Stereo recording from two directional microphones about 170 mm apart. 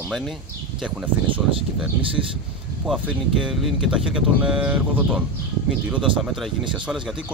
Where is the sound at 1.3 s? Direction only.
30° right (ahead or behind).